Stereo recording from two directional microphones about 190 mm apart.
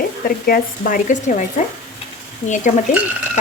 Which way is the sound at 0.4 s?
50° left (ahead or behind).